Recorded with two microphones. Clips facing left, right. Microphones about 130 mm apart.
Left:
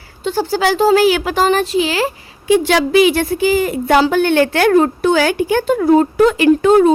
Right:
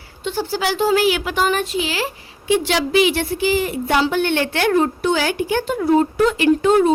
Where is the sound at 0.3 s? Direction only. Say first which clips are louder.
Left 6 dB; 45° left (ahead or behind).